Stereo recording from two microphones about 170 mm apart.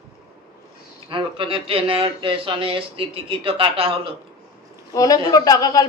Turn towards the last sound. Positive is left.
turn(degrees=20)  # may be behind; listen again after turning